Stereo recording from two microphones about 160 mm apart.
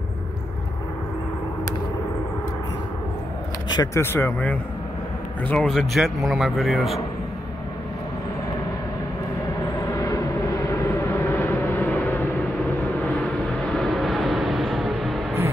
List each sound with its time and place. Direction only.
3.7 s a man's voice: 20° left (ahead or behind); by 7.0 s centre (ahead or behind)
9.9 s vehicle: 20° left (ahead or behind)
13.7 s vehicle: centre (ahead or behind)